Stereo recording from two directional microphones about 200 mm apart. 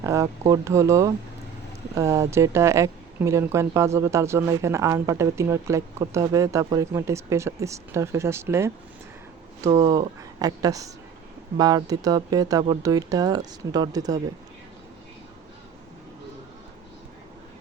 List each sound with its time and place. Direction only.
0.0 s speech: 15° right (ahead or behind)